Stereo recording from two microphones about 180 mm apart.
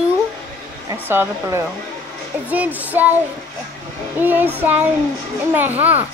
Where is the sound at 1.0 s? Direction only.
15° right (ahead or behind).